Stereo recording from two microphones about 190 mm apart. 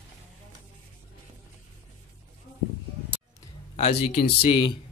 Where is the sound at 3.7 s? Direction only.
30° left (ahead or behind).